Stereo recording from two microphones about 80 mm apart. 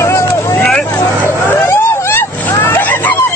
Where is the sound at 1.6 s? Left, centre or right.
Left.